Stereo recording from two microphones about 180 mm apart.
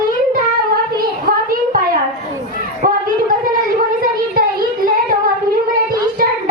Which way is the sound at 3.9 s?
55° right (ahead or behind).